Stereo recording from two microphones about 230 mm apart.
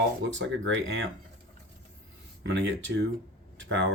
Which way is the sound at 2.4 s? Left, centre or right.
Right.